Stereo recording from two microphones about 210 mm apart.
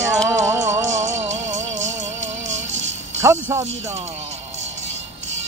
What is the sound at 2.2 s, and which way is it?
Music, 60° right (ahead or behind).